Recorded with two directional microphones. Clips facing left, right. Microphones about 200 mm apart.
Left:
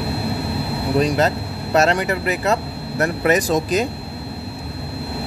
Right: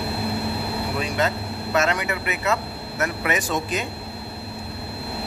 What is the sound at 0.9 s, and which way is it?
Speech, 35° left (ahead or behind).